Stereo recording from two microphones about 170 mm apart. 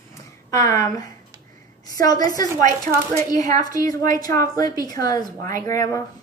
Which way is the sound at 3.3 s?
20° left (ahead or behind).